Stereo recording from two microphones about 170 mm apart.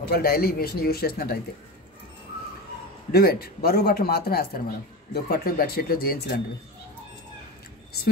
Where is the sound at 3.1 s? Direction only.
65° left (ahead or behind).